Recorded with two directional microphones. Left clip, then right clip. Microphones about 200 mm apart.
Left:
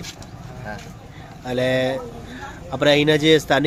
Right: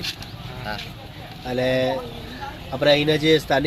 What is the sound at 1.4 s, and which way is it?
Speech, 15° left (ahead or behind).